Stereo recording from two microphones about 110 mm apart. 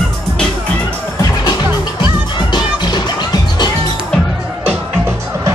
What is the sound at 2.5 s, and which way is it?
Music, 40° left (ahead or behind).